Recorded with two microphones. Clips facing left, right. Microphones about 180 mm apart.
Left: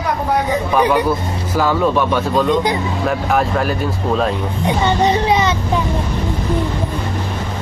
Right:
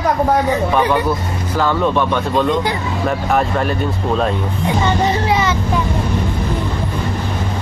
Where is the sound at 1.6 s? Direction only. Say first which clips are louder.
Left 1 dB; 5° left (ahead or behind).